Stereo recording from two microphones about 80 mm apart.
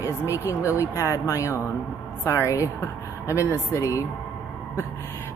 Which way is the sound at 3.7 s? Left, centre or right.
Left.